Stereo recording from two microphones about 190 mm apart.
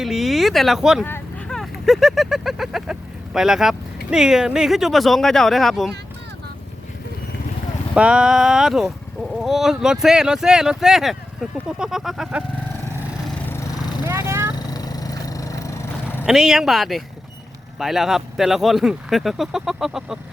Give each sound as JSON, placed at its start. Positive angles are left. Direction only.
{"t": 0.0, "sound": "speech", "side_deg": 0}
{"t": 1.0, "sound": "speech", "side_deg": 10}
{"t": 7.9, "sound": "speech", "side_deg": -5}
{"t": 13.2, "sound": "vehicle", "side_deg": 10}
{"t": 13.7, "sound": "vehicle", "side_deg": 25}
{"t": 14.1, "sound": "vehicle", "side_deg": -15}
{"t": 14.7, "sound": "vehicle", "side_deg": 20}
{"t": 16.2, "sound": "speech", "side_deg": -5}